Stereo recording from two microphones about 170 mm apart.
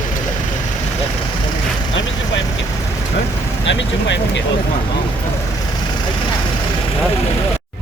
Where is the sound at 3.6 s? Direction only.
90° left.